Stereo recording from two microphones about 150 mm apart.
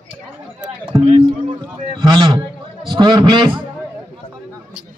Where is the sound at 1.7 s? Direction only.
35° right (ahead or behind).